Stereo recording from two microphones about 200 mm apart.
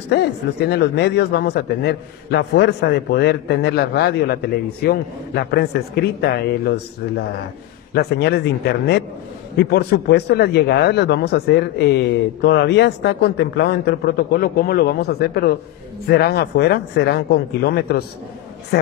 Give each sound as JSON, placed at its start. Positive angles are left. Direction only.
{"t": 0.1, "sound": "a man's voice", "side_deg": 55}